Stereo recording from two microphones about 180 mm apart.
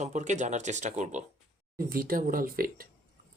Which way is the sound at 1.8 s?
55° right (ahead or behind).